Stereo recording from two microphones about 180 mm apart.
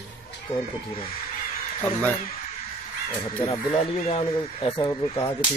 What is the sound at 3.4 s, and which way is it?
Speech, 30° left (ahead or behind).